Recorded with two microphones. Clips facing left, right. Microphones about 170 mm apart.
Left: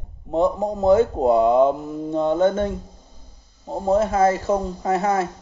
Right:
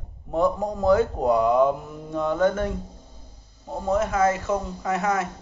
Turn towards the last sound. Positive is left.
turn(degrees=30)  # may be behind; listen again after turning